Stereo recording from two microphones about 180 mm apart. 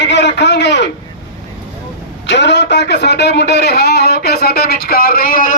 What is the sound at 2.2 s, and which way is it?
A man's voice, 75° left (ahead or behind).